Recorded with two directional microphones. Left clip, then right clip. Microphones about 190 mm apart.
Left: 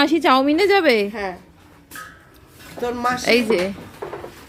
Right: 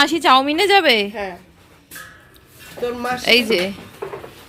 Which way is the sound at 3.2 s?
10° left (ahead or behind).